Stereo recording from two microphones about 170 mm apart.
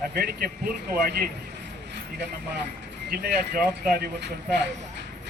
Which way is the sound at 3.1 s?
60° right (ahead or behind).